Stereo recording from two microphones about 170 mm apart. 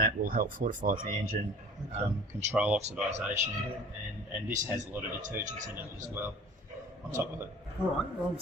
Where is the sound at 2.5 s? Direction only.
10° right (ahead or behind).